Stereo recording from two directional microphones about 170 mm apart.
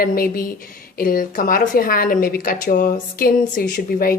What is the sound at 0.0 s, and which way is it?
A woman's voice, 60° left (ahead or behind).